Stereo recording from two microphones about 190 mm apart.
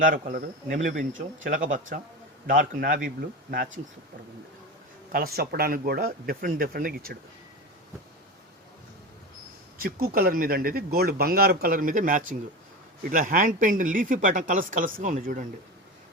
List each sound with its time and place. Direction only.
0.0 s speech: 45° right (ahead or behind)
5.1 s speech: 50° right (ahead or behind)
9.8 s speech: 50° right (ahead or behind)